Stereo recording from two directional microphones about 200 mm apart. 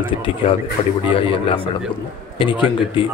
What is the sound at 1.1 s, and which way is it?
A man's voice, 25° left (ahead or behind).